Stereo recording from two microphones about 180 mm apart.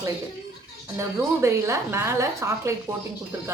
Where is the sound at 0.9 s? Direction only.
15° right (ahead or behind).